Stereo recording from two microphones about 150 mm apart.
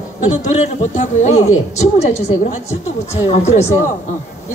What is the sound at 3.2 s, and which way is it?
Speech, 45° left (ahead or behind).